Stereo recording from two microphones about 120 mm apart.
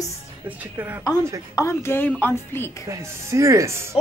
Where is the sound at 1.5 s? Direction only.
20° left (ahead or behind).